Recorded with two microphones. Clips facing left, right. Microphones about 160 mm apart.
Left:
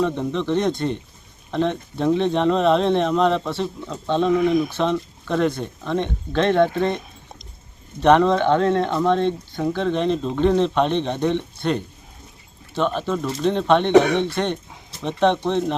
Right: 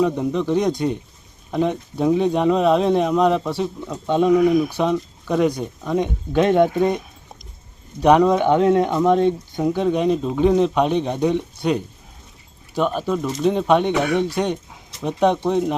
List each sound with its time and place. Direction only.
0.0 s speech: 10° right (ahead or behind)